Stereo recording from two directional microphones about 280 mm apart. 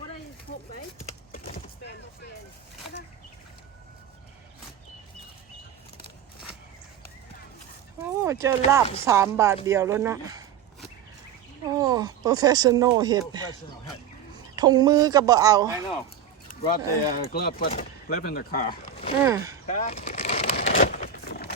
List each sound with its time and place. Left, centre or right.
1.3 s clip-clop: left
8.2 s speech: centre
11.8 s speech: centre
14.5 s speech: centre
16.5 s speech: left
19.2 s speech: centre
19.7 s a sound: left